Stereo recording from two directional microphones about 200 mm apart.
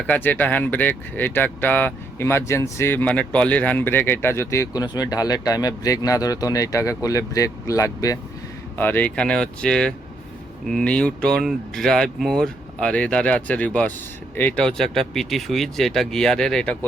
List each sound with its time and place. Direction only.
0.1 s speech: 10° left (ahead or behind)